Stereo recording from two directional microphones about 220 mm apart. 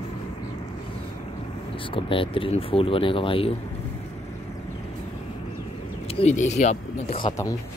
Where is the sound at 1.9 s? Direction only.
25° left (ahead or behind).